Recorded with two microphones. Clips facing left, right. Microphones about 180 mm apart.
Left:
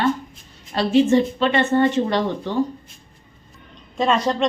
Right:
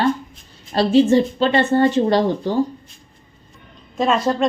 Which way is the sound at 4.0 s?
5° right (ahead or behind).